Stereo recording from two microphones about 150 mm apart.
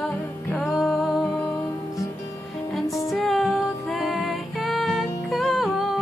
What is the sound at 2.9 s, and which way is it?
Music, 20° left (ahead or behind).